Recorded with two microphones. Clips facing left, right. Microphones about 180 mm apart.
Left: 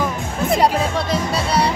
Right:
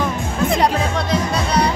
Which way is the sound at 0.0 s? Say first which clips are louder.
Right 2 dB; 5° left (ahead or behind).